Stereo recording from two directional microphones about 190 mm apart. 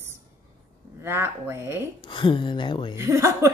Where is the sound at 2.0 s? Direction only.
25° left (ahead or behind).